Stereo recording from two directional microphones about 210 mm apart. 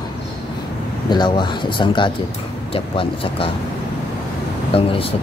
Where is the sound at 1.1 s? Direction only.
20° left (ahead or behind).